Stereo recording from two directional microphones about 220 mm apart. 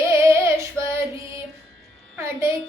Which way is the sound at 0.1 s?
10° right (ahead or behind).